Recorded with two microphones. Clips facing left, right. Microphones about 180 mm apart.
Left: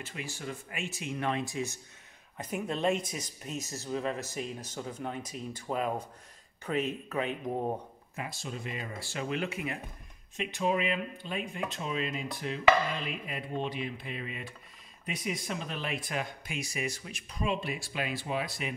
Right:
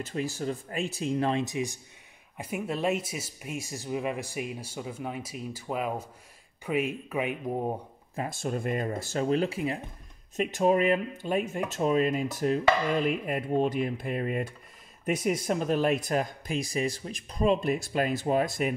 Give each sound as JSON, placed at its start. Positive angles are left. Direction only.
{"t": 0.0, "sound": "speech", "side_deg": -40}
{"t": 8.2, "sound": "speech", "side_deg": -50}
{"t": 10.3, "sound": "speech", "side_deg": -45}